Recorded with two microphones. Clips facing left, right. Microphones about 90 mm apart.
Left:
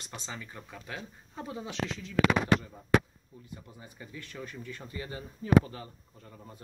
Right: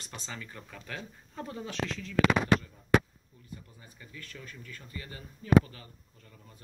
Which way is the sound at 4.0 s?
25° left (ahead or behind).